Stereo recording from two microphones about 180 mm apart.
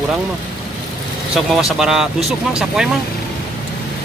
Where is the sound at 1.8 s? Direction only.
Centre (ahead or behind).